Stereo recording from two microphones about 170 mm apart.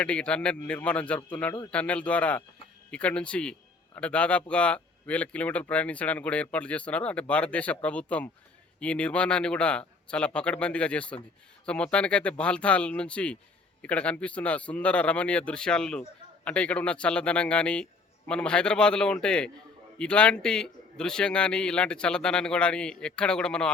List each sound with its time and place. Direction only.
0.0 s a man's voice: 5° left (ahead or behind)